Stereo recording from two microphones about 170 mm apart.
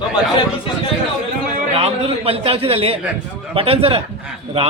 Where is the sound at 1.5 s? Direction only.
35° right (ahead or behind).